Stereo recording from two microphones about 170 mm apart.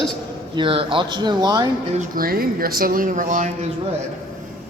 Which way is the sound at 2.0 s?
60° right (ahead or behind).